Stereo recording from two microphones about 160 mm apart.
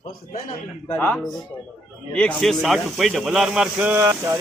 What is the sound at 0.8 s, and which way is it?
Speech, 10° left (ahead or behind).